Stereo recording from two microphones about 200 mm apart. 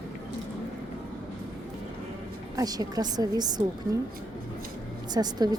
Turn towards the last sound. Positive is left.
turn(degrees=-20)  # may be behind; listen again after turning